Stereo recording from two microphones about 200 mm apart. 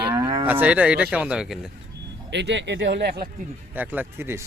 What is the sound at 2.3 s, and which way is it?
Speech, 60° right (ahead or behind).